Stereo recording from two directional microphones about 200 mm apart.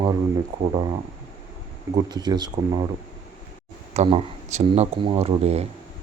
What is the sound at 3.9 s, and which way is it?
Speech, 30° right (ahead or behind).